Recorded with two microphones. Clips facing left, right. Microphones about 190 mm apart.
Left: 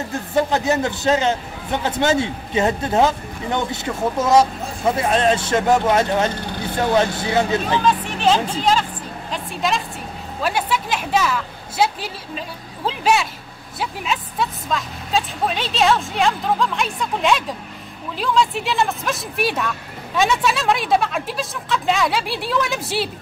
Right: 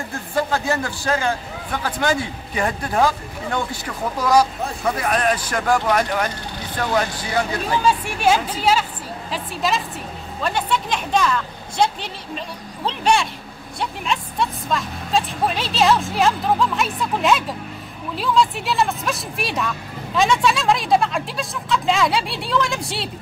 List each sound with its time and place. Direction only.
0.1 s a man's voice: 20° left (ahead or behind)
7.8 s a woman's voice: 10° right (ahead or behind)